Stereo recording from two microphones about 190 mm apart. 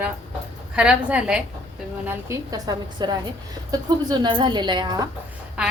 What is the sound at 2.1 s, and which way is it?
A woman's voice, 15° right (ahead or behind).